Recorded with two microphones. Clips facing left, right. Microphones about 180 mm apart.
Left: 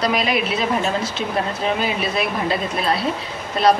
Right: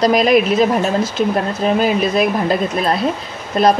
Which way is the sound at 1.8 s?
45° right (ahead or behind).